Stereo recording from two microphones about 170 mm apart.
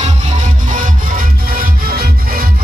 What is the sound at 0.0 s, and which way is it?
Music, 45° right (ahead or behind).